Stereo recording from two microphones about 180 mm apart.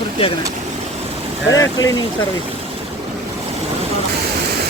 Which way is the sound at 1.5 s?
20° left (ahead or behind).